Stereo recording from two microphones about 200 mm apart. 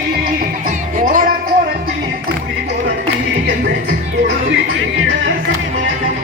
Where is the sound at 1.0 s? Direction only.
45° right (ahead or behind).